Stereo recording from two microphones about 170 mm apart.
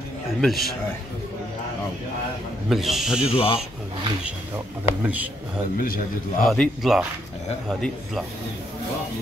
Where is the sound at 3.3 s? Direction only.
35° left (ahead or behind).